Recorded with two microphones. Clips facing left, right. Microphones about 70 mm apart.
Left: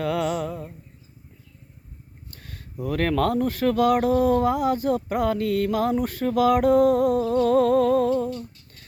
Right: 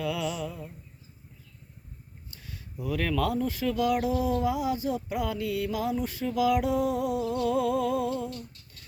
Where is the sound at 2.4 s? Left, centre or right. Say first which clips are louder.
Left 4 dB; left.